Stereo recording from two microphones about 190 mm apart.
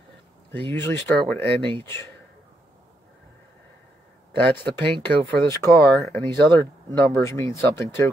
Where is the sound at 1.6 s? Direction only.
25° right (ahead or behind).